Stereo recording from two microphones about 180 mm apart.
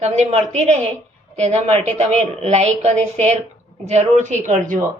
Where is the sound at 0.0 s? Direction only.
40° right (ahead or behind).